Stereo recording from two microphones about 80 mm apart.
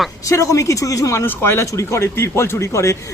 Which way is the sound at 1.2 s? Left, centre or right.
Left.